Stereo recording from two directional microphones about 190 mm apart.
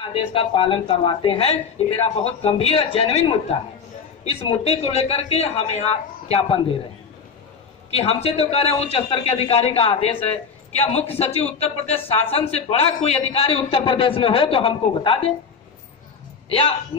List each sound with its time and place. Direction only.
0.1 s speech: 30° left (ahead or behind)
7.9 s speech: 35° left (ahead or behind)
16.4 s a man's voice: 30° left (ahead or behind)